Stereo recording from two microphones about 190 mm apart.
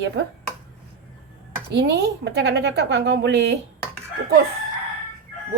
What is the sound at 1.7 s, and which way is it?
A woman's voice, 65° right (ahead or behind).